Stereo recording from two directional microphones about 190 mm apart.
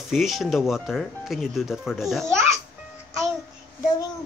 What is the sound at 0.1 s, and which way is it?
Speech, centre (ahead or behind).